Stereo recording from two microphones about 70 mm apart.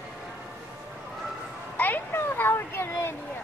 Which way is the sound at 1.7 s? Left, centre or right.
Left.